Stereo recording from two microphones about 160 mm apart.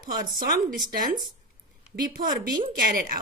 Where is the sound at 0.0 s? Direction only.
60° right (ahead or behind).